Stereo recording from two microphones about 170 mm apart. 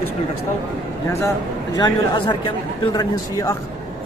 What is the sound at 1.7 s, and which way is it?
Speech, 25° left (ahead or behind).